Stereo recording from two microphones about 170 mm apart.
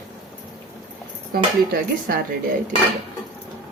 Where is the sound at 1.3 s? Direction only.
65° right (ahead or behind).